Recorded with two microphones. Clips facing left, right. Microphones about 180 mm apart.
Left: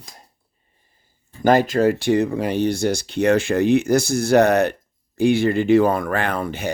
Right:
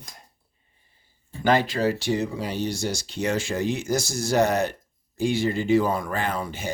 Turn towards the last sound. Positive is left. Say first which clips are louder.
# left 5 dB
turn(degrees=60)  # may be behind; listen again after turning